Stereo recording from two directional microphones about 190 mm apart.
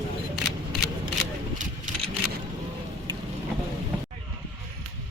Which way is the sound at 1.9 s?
40° right (ahead or behind).